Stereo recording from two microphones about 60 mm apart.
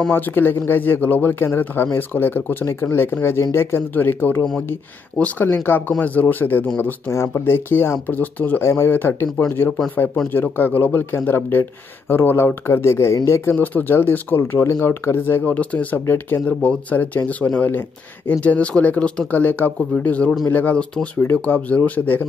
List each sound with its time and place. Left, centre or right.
0.1 s speech: left
2.6 s speech: left
8.1 s speech: left
8.6 s speech: left
8.9 s speech: left
13.1 s speech: left
13.5 s speech: left
14.6 s speech: left
16.1 s speech: left
16.4 s speech: left
19.3 s speech: left
20.7 s speech: centre
21.2 s speech: left